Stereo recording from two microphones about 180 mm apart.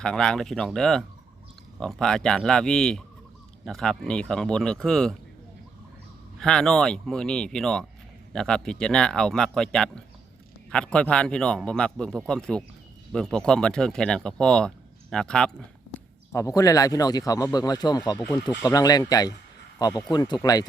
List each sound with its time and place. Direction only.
0.0 s a man's voice: 5° left (ahead or behind)
6.4 s a man's voice: 5° left (ahead or behind)
16.3 s speech: 15° left (ahead or behind)